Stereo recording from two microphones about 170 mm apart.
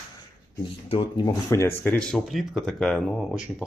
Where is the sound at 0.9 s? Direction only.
25° left (ahead or behind).